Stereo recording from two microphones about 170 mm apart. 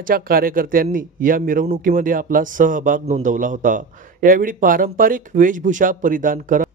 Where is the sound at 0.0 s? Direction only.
60° right (ahead or behind).